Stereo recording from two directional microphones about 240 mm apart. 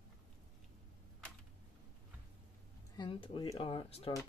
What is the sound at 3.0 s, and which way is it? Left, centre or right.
Speech, centre.